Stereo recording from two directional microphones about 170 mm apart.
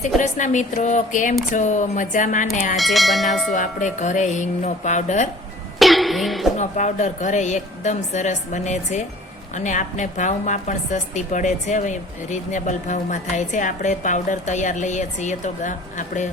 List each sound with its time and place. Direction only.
0.0 s a woman's voice: 45° left (ahead or behind)
2.7 s speech: centre (ahead or behind)
3.5 s a woman's voice: 45° left (ahead or behind)
5.8 s music: centre (ahead or behind)
6.6 s a woman's voice: 45° left (ahead or behind)